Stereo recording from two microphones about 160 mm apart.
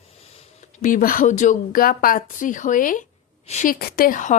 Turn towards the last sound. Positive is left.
turn(degrees=55)  # may be behind; listen again after turning